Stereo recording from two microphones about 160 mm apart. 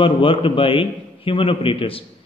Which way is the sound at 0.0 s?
35° left (ahead or behind).